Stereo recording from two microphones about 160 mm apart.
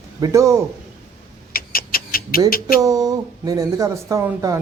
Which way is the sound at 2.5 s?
65° left (ahead or behind).